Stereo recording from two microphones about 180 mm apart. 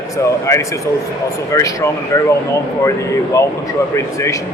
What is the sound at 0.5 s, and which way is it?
Speech, 15° left (ahead or behind).